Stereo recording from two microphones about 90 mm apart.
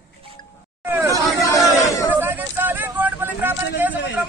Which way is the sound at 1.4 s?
35° left (ahead or behind).